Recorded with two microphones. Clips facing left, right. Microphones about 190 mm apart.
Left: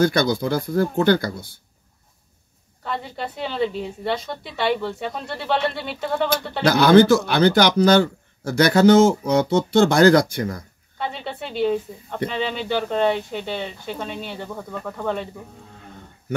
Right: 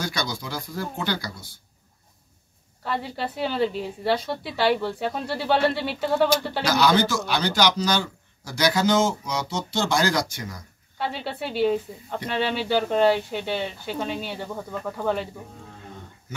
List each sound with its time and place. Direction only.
0.0 s speech: 55° left (ahead or behind)
2.8 s a woman's voice: 5° right (ahead or behind)
6.6 s speech: 55° left (ahead or behind)
11.0 s a woman's voice: 5° right (ahead or behind)